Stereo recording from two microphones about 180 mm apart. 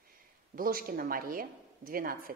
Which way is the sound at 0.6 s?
55° right (ahead or behind).